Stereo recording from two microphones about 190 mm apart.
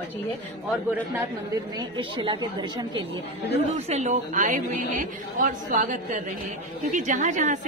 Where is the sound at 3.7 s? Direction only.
35° right (ahead or behind).